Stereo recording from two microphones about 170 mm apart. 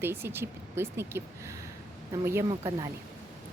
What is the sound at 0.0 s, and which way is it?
Speech, 15° right (ahead or behind).